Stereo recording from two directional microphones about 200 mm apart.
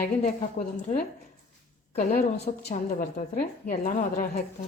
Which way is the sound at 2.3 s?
35° left (ahead or behind).